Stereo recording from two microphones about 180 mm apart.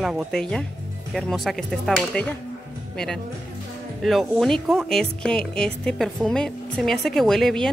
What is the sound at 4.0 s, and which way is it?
Speech, centre (ahead or behind).